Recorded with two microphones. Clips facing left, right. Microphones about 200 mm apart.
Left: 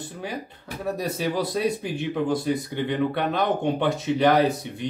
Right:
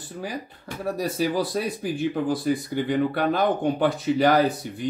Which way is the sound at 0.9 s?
Centre (ahead or behind).